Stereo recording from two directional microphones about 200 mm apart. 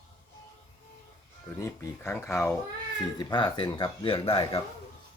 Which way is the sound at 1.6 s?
15° left (ahead or behind).